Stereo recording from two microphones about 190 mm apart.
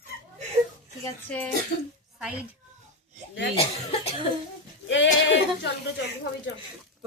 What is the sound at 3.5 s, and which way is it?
Speech, 35° left (ahead or behind).